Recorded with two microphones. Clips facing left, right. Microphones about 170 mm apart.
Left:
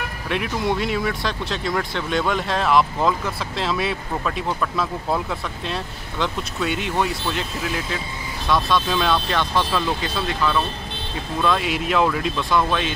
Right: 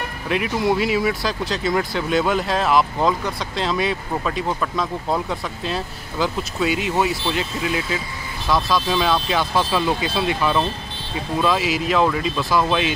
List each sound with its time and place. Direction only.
0.3 s speech: centre (ahead or behind)
11.4 s speech: 5° right (ahead or behind)